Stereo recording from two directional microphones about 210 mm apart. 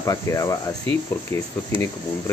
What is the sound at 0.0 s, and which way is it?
Speech, 15° left (ahead or behind).